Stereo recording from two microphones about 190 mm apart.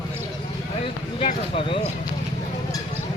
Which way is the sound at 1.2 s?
30° left (ahead or behind).